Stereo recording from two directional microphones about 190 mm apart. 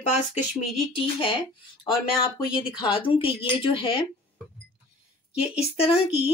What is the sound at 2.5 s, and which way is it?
Speech, 25° left (ahead or behind).